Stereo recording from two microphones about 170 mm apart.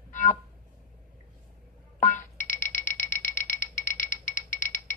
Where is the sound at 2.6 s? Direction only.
50° left (ahead or behind).